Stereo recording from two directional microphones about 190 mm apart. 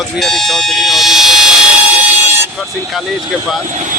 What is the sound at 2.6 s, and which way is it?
Speech, centre (ahead or behind).